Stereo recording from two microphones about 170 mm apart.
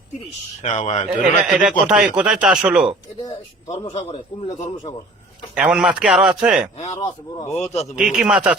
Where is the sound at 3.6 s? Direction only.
25° left (ahead or behind).